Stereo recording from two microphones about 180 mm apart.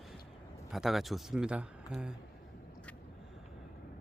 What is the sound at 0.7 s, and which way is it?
Speech, centre (ahead or behind).